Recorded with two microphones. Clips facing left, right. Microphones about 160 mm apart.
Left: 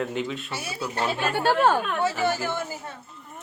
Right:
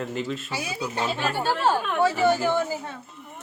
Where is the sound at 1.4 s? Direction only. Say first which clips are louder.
Left 3 dB; 60° left (ahead or behind).